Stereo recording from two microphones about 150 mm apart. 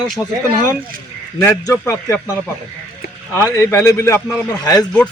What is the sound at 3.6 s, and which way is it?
A man's voice, 20° left (ahead or behind).